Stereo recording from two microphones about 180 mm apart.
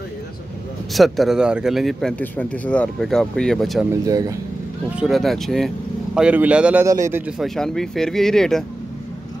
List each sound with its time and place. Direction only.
0.9 s speech: centre (ahead or behind)
3.9 s speech: 20° right (ahead or behind)
4.9 s speech: centre (ahead or behind)
7.4 s speech: centre (ahead or behind)